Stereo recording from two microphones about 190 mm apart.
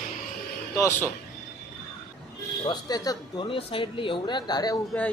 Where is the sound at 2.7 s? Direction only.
20° left (ahead or behind).